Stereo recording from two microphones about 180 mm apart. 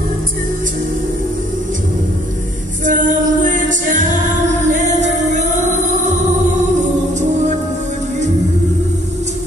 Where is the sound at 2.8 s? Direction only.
45° right (ahead or behind).